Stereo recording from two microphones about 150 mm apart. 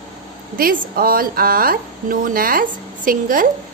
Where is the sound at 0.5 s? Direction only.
70° right (ahead or behind).